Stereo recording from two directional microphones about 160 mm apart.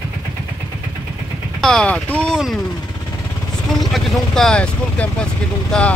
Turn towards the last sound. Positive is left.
turn(degrees=5)  # may be behind; listen again after turning